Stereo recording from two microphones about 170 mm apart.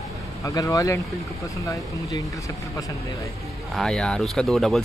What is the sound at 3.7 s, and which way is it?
Speech, 5° left (ahead or behind).